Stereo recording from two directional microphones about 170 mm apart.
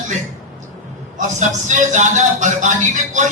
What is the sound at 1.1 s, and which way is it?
A man's voice, 45° right (ahead or behind).